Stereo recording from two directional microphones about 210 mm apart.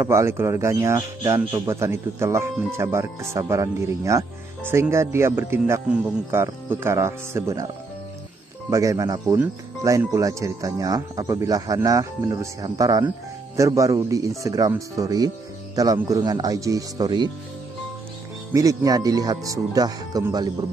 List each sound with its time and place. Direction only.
0.0 s speech: 15° right (ahead or behind)
8.6 s speech: 15° right (ahead or behind)
18.5 s speech: 15° right (ahead or behind)